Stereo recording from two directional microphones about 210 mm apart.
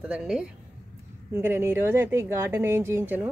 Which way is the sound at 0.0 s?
5° right (ahead or behind).